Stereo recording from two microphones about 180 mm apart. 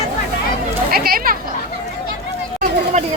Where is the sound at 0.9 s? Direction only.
55° right (ahead or behind).